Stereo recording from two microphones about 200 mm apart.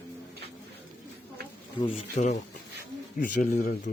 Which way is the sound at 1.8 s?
35° left (ahead or behind).